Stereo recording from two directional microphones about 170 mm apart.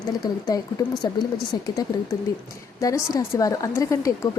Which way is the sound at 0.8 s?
20° left (ahead or behind).